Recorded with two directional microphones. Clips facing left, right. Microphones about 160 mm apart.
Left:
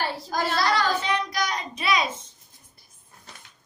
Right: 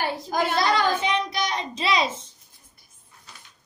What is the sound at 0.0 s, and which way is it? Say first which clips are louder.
Child singing: right 2 dB; 15° right (ahead or behind).